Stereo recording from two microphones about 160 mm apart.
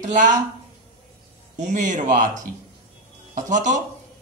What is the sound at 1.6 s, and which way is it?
Speech, 50° right (ahead or behind).